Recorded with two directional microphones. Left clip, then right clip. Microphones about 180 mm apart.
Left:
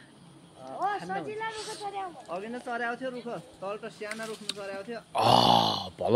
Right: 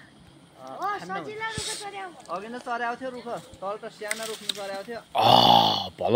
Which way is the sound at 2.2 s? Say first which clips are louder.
Right 3 dB; 10° left (ahead or behind).